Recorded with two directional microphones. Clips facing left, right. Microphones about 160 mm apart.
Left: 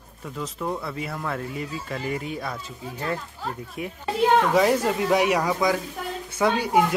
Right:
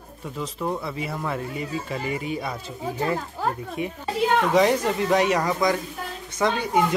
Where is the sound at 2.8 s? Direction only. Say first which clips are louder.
Right 4 dB; 65° right (ahead or behind).